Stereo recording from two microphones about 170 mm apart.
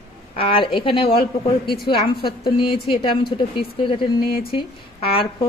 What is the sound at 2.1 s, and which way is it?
Speech, 65° left (ahead or behind).